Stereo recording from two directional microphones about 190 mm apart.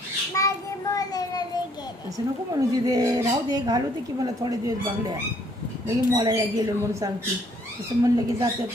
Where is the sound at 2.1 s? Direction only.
20° right (ahead or behind).